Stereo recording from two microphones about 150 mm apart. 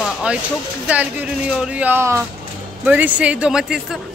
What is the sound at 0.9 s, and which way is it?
Speech, 10° right (ahead or behind).